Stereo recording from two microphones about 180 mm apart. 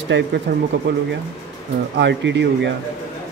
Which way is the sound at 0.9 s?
80° right.